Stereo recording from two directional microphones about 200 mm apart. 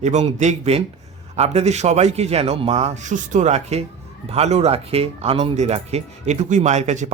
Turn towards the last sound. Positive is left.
turn(degrees=-35)  # may be behind; listen again after turning